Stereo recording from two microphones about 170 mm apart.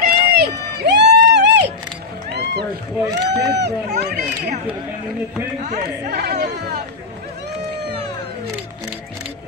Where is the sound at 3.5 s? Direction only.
80° right.